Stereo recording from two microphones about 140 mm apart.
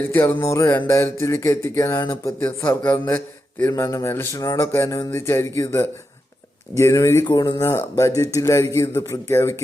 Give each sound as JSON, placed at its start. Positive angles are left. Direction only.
{"t": 0.1, "sound": "music", "side_deg": 15}
{"t": 0.9, "sound": "speech", "side_deg": 20}